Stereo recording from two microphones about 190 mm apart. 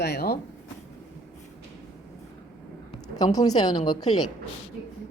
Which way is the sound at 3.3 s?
20° left (ahead or behind).